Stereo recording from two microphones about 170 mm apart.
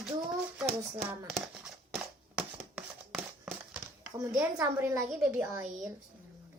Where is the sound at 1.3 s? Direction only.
Centre (ahead or behind).